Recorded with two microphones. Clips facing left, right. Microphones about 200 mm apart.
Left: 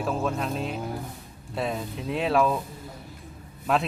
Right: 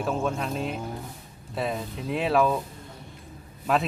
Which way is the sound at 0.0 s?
Centre (ahead or behind).